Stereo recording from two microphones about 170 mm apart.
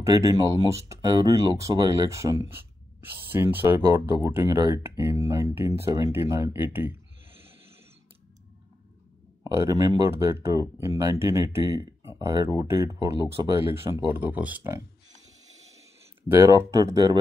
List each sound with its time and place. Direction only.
0.0 s speech: 20° right (ahead or behind)
9.4 s speech: 20° right (ahead or behind)
16.3 s speech: 15° right (ahead or behind)